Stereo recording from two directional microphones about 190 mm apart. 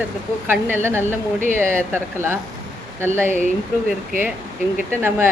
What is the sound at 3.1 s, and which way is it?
Speech, 40° right (ahead or behind).